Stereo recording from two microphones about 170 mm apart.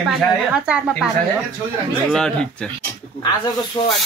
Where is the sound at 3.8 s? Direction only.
25° left (ahead or behind).